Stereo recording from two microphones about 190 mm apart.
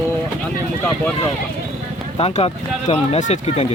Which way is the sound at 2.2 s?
30° left (ahead or behind).